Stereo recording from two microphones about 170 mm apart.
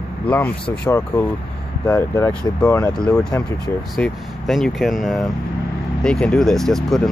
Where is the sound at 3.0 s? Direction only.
25° left (ahead or behind).